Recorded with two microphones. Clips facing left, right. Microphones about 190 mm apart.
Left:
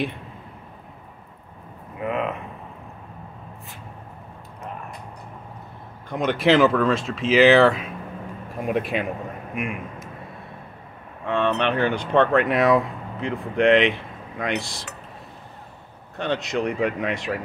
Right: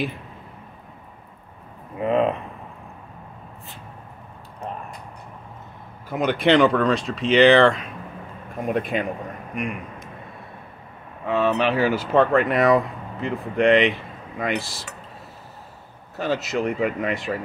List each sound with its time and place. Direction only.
2.0 s a sound: 30° right (ahead or behind)
6.0 s speech: centre (ahead or behind)
11.2 s speech: 5° right (ahead or behind)
16.2 s speech: 5° right (ahead or behind)